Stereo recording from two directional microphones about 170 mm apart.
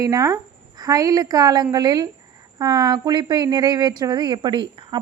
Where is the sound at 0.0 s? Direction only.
20° right (ahead or behind).